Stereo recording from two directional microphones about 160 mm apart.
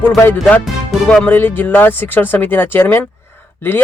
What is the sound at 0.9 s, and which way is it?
Speech, 5° left (ahead or behind).